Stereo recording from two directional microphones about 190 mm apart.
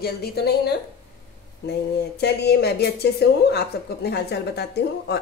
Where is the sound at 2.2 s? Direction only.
60° left (ahead or behind).